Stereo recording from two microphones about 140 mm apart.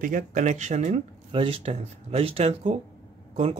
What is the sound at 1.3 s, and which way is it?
Speech, 40° right (ahead or behind).